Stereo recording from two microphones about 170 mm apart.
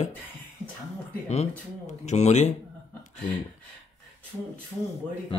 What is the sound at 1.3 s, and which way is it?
A man's voice, 40° left (ahead or behind).